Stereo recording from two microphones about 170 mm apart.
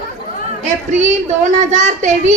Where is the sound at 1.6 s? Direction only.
45° right (ahead or behind).